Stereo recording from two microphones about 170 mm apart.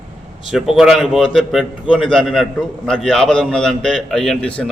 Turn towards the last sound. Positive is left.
turn(degrees=5)  # may be behind; listen again after turning